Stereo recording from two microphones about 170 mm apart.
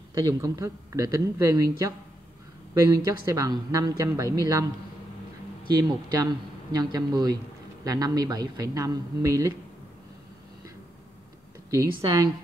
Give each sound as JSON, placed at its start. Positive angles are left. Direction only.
{"t": 0.1, "sound": "speech", "side_deg": -20}
{"t": 6.0, "sound": "speech", "side_deg": -25}
{"t": 11.9, "sound": "speech", "side_deg": -30}